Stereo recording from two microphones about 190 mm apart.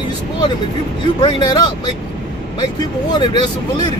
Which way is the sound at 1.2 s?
25° left (ahead or behind).